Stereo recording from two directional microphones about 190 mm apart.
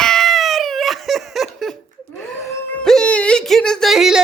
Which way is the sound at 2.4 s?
5° left (ahead or behind).